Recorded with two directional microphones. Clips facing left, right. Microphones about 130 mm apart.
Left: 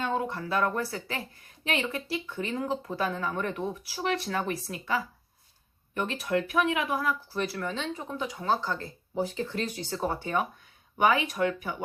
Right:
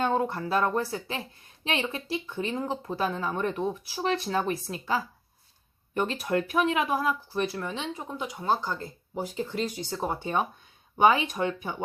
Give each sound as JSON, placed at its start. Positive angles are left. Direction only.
{"t": 0.0, "sound": "speech", "side_deg": -35}
{"t": 6.2, "sound": "speech", "side_deg": -35}